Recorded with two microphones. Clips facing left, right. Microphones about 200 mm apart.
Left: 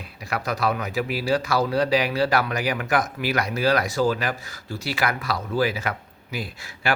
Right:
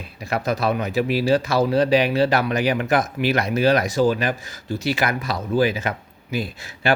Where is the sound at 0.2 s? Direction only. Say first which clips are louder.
Right 3 dB; 25° right (ahead or behind).